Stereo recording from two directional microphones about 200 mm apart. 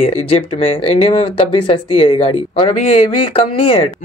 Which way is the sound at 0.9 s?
30° left (ahead or behind).